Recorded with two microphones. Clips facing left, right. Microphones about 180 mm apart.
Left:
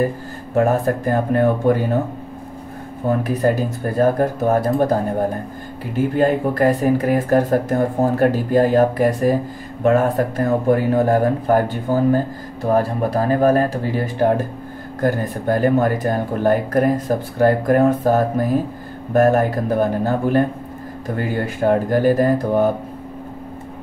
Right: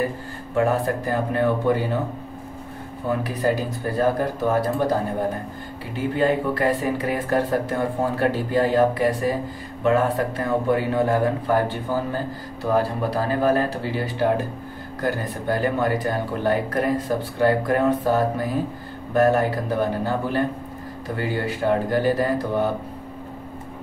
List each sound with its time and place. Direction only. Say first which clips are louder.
0.6 s speech: left 4 dB; 45° left (ahead or behind)
3.1 s speech: left 5 dB; 50° left (ahead or behind)
5.9 s speech: left 4 dB; 45° left (ahead or behind)